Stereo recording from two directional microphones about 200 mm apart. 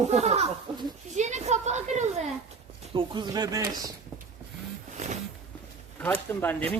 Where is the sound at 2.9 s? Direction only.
25° right (ahead or behind).